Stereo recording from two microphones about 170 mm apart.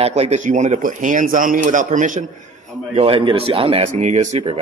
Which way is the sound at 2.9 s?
30° right (ahead or behind).